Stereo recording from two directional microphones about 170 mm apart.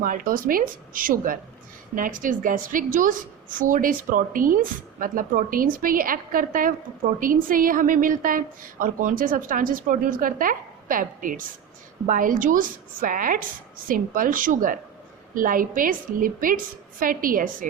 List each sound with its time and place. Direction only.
0.0 s a woman's voice: 55° right (ahead or behind)